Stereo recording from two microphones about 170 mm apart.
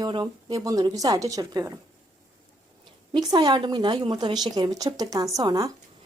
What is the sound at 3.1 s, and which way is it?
Speech, 25° right (ahead or behind).